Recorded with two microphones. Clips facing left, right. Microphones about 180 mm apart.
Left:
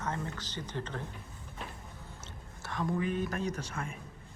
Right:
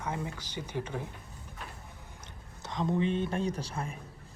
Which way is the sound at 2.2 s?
20° right (ahead or behind).